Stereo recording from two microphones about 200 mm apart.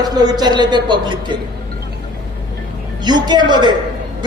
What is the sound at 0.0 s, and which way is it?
A woman's voice, 20° right (ahead or behind).